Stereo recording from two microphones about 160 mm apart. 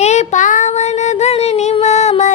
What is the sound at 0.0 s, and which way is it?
Child singing, 45° left (ahead or behind).